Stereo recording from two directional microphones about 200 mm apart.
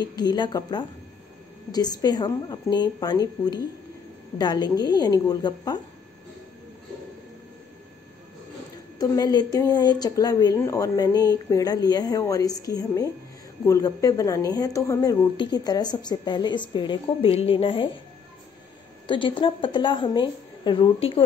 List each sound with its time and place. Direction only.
0.0 s a woman's voice: 20° left (ahead or behind)
8.9 s a woman's voice: 20° left (ahead or behind)
19.0 s a woman's voice: 25° left (ahead or behind)